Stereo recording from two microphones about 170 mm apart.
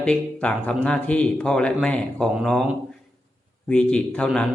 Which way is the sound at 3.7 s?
5° left (ahead or behind).